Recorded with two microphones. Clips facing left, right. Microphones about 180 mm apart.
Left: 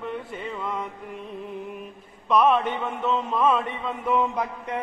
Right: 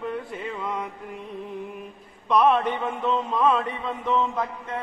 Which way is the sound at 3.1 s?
10° left (ahead or behind).